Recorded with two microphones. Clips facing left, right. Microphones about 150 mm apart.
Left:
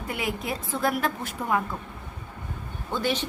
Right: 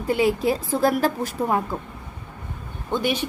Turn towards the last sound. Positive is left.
turn(degrees=-15)  # may be behind; listen again after turning